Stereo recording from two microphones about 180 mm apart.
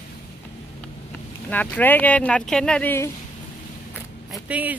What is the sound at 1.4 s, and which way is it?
Speech, 10° left (ahead or behind).